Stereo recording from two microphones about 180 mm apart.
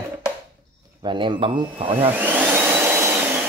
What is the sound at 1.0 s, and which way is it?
Speech, 25° right (ahead or behind).